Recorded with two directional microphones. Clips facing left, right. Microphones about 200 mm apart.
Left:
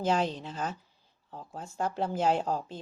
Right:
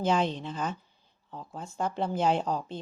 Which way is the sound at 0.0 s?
40° left (ahead or behind).